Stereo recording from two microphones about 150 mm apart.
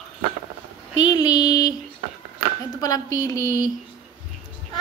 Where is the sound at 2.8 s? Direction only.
25° left (ahead or behind).